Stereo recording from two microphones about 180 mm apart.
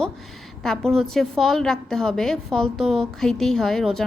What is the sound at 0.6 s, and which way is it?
A woman's voice, 5° left (ahead or behind).